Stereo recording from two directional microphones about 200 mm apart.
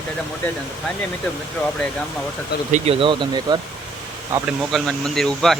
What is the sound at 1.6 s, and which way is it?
Speech, 5° left (ahead or behind).